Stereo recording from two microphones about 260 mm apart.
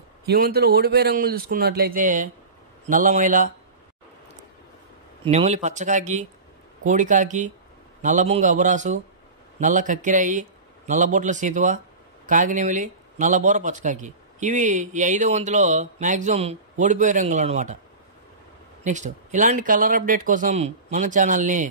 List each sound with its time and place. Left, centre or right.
0.3 s speech: right
5.2 s speech: right
18.9 s speech: right